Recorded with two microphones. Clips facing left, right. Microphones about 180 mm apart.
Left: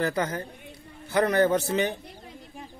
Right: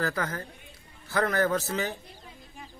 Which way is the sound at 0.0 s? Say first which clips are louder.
Left 4 dB; 20° left (ahead or behind).